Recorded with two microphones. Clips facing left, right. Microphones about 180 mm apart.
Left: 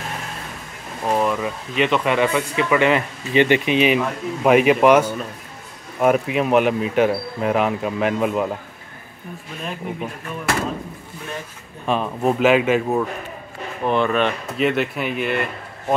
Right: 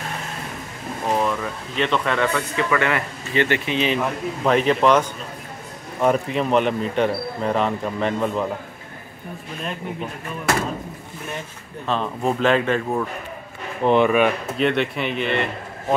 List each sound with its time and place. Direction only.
1.1 s speech: 10° left (ahead or behind)
9.6 s speech: centre (ahead or behind)
11.8 s speech: 10° left (ahead or behind)
13.8 s speech: 15° right (ahead or behind)
14.6 s speech: 5° left (ahead or behind)